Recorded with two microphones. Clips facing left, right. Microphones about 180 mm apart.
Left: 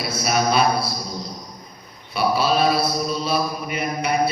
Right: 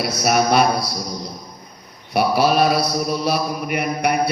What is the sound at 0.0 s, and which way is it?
Speech, 65° right (ahead or behind).